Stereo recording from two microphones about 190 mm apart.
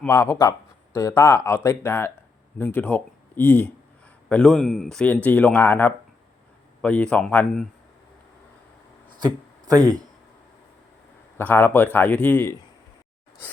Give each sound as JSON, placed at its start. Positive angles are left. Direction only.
{"t": 0.0, "sound": "speech", "side_deg": 15}
{"t": 9.7, "sound": "speech", "side_deg": -20}
{"t": 11.3, "sound": "speech", "side_deg": 10}